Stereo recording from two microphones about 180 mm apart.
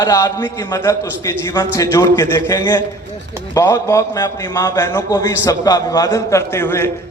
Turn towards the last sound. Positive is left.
turn(degrees=15)  # may be behind; listen again after turning